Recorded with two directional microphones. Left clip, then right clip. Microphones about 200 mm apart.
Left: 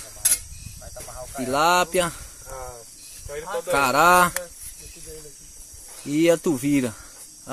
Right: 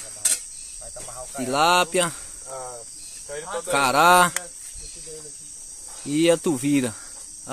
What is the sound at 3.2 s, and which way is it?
Speech, 25° left (ahead or behind).